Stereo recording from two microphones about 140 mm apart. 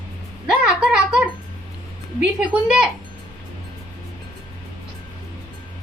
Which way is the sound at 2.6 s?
5° right (ahead or behind).